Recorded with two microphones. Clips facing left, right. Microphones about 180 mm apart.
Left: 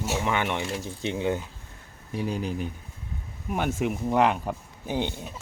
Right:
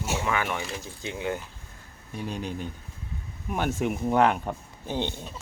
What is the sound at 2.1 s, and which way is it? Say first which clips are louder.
Speech: left 4 dB; 10° left (ahead or behind).